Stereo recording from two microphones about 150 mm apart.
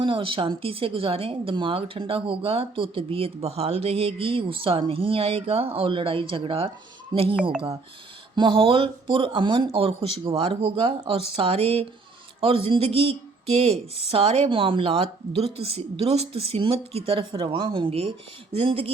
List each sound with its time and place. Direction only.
0.0 s speech: 35° right (ahead or behind)
8.4 s speech: 35° right (ahead or behind)